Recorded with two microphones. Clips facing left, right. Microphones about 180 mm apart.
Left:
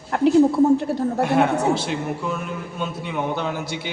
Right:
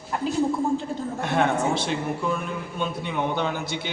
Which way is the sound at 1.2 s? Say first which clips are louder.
Left 3 dB; 10° left (ahead or behind).